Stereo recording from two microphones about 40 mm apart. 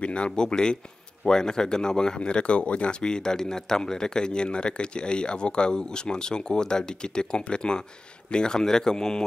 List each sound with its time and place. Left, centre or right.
0.0 s speech: left